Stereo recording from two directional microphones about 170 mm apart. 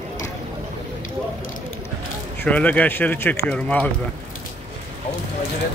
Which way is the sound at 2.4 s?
10° left (ahead or behind).